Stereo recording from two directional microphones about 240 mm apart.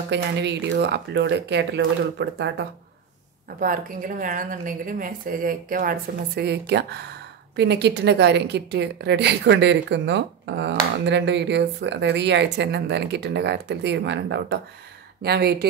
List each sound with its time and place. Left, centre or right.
0.1 s a woman's voice: right
3.5 s a woman's voice: right